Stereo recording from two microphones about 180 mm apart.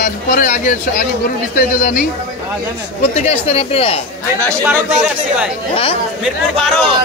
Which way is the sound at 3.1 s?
35° left (ahead or behind).